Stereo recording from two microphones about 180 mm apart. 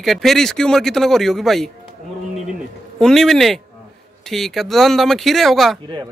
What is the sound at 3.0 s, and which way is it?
Speech, centre (ahead or behind).